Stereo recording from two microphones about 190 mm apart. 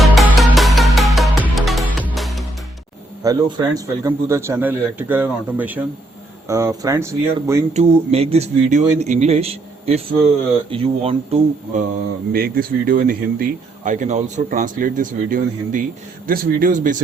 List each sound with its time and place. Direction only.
0.0 s music: centre (ahead or behind)
3.2 s a man's voice: 20° right (ahead or behind)
7.7 s speech: 35° right (ahead or behind)
12.3 s speech: 50° right (ahead or behind)